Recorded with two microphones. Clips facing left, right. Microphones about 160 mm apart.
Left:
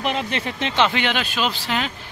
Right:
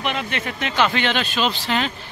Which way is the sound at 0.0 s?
35° left (ahead or behind).